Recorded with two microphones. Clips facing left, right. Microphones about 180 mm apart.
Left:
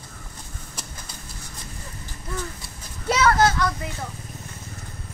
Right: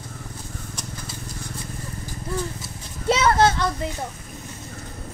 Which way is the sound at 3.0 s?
25° right (ahead or behind).